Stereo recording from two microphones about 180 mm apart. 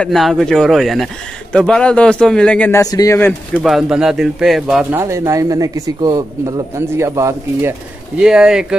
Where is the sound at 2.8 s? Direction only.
20° left (ahead or behind).